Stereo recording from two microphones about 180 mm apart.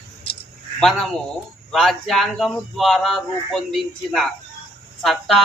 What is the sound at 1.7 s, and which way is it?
Speech, centre (ahead or behind).